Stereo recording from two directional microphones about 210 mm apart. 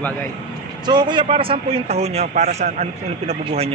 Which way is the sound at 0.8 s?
20° right (ahead or behind).